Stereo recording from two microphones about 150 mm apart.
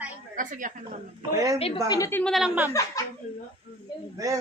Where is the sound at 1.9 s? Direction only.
20° left (ahead or behind).